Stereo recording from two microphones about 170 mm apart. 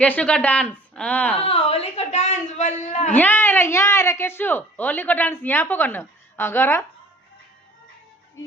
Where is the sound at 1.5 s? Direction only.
35° left (ahead or behind).